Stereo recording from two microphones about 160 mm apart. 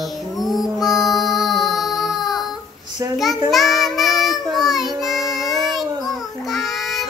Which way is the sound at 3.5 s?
Centre (ahead or behind).